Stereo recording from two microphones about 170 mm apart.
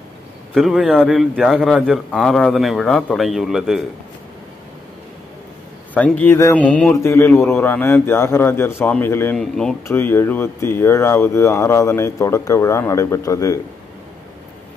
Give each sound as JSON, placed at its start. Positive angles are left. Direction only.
{"t": 0.6, "sound": "a man's voice", "side_deg": 0}
{"t": 5.9, "sound": "speech", "side_deg": 10}
{"t": 9.4, "sound": "a man's voice", "side_deg": 5}